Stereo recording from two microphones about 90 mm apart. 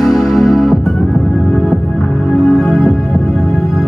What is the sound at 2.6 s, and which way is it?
Music, 5° left (ahead or behind).